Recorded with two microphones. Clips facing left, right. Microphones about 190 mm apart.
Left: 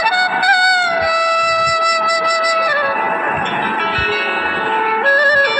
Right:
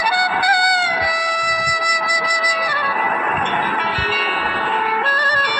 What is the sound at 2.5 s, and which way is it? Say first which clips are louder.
Music: left 6 dB; 70° left (ahead or behind).